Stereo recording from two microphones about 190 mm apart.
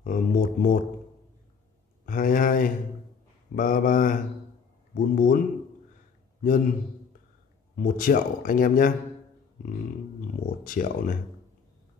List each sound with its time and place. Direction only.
0.0 s speech: 45° left (ahead or behind)
2.0 s speech: 45° left (ahead or behind)
6.4 s speech: 45° left (ahead or behind)
7.7 s speech: 45° left (ahead or behind)
10.6 s speech: 45° left (ahead or behind)